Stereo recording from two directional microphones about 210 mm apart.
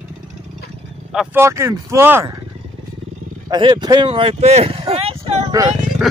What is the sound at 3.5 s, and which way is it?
Speech, 20° right (ahead or behind).